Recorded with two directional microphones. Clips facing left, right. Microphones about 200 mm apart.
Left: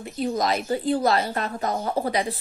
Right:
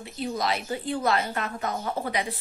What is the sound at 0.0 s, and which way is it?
Speech, 45° left (ahead or behind).